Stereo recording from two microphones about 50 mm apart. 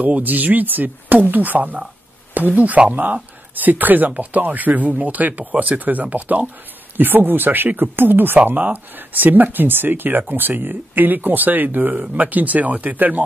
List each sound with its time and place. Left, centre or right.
0.0 s speech: right